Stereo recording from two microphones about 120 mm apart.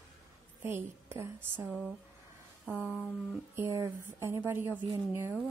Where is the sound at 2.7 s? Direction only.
15° right (ahead or behind).